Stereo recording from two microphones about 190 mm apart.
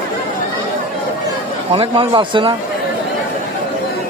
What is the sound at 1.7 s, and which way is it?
Speech, 25° right (ahead or behind).